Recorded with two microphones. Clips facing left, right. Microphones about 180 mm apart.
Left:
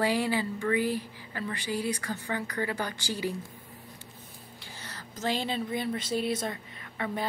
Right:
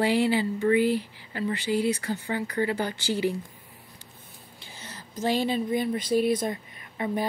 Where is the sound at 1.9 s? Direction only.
25° right (ahead or behind).